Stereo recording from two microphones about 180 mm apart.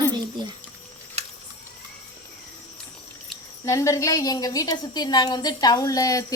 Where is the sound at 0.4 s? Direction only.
25° right (ahead or behind).